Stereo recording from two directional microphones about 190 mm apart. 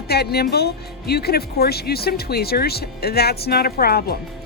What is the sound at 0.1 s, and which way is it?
Speech, 55° left (ahead or behind).